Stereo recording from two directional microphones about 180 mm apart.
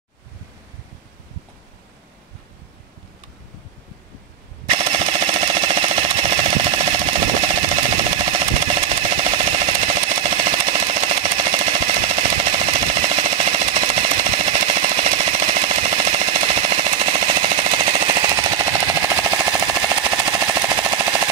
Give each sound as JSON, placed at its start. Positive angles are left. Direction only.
{"t": 4.6, "sound": "machine gun", "side_deg": -35}
{"t": 18.3, "sound": "jackhammer", "side_deg": -25}